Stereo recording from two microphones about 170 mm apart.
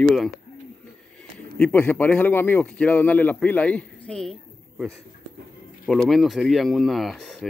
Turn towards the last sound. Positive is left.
turn(degrees=0)  # may be behind; listen again after turning